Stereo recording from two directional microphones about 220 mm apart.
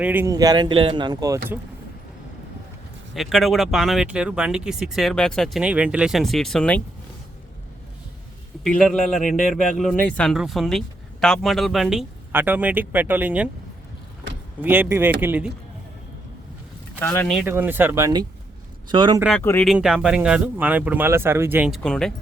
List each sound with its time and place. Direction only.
0.0 s speech: 10° right (ahead or behind)
3.2 s speech: centre (ahead or behind)
8.6 s speech: centre (ahead or behind)
14.6 s speech: 10° right (ahead or behind)
17.0 s speech: 10° left (ahead or behind)
17.4 s speech: 10° right (ahead or behind)
19.4 s speech: 10° left (ahead or behind)
19.6 s speech: 5° right (ahead or behind)
21.8 s speech: 5° left (ahead or behind)